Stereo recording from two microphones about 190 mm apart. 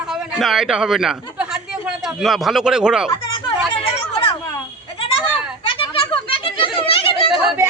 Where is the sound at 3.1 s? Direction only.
25° left (ahead or behind).